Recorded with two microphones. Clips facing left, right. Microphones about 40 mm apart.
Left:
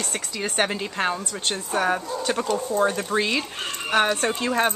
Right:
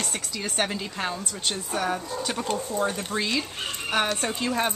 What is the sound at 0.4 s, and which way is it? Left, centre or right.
Speech, left.